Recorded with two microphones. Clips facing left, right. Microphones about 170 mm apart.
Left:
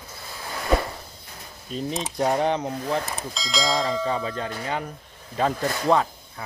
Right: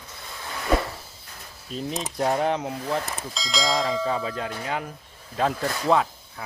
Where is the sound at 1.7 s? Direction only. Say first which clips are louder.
Left 2 dB; centre (ahead or behind).